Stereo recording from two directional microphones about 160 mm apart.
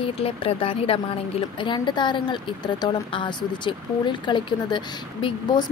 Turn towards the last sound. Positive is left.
turn(degrees=30)  # may be behind; listen again after turning